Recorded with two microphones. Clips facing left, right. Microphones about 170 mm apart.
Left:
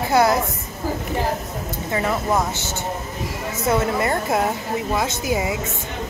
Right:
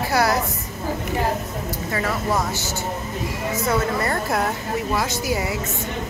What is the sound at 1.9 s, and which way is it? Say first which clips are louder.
Speech: left 3 dB; 20° left (ahead or behind).